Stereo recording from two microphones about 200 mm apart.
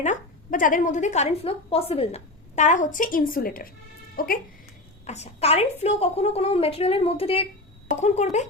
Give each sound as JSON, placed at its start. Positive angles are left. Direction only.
{"t": 0.0, "sound": "a woman's voice", "side_deg": 40}
{"t": 5.0, "sound": "a woman's voice", "side_deg": 35}